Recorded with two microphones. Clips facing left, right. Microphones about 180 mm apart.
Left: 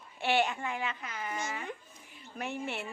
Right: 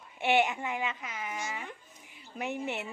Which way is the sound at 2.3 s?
15° right (ahead or behind).